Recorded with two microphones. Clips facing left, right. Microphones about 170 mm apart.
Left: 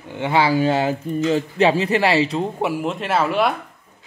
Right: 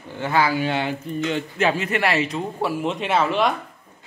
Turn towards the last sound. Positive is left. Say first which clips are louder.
# left 1 dB
turn(degrees=5)  # may be behind; listen again after turning